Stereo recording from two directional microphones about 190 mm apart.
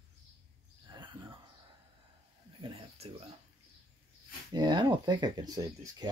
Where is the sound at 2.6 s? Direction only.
30° right (ahead or behind).